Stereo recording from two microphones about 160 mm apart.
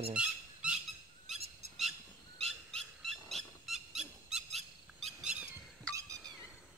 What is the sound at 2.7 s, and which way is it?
Owl, centre (ahead or behind).